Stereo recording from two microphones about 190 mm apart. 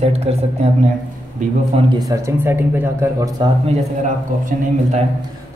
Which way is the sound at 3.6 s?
40° right (ahead or behind).